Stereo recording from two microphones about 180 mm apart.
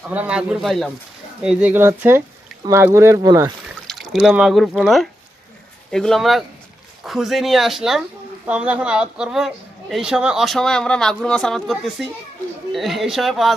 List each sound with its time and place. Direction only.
0.1 s speech: 5° right (ahead or behind)
3.8 s speech: centre (ahead or behind)